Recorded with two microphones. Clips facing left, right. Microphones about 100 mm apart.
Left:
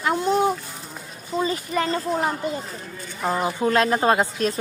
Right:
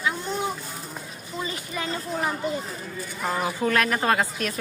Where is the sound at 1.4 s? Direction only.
35° left (ahead or behind).